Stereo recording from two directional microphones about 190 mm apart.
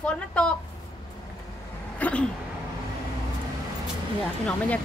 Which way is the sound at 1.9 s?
5° left (ahead or behind).